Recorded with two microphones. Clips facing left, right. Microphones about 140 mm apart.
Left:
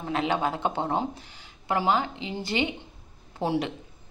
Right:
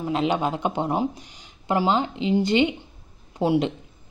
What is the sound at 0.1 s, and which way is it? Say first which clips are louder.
Speech: right 2 dB; 20° right (ahead or behind).